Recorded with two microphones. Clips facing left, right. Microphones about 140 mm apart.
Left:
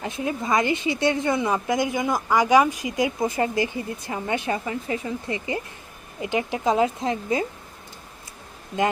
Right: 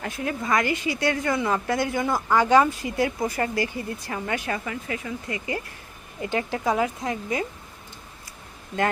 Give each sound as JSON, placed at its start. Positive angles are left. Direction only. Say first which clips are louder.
{"t": 0.0, "sound": "a woman's voice", "louder": "left 2 dB", "side_deg": 20}